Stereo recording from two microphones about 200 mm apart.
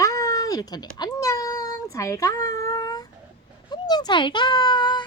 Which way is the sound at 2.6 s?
15° left (ahead or behind).